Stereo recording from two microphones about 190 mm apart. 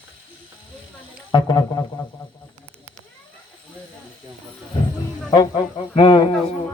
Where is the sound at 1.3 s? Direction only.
25° left (ahead or behind).